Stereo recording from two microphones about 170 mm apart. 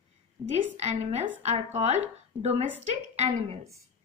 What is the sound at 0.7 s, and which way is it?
A woman's voice, 40° right (ahead or behind).